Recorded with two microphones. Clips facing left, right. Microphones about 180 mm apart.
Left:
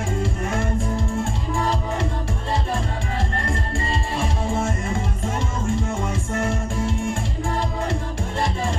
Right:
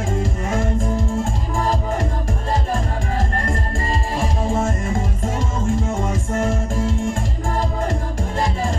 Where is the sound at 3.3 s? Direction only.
40° right (ahead or behind).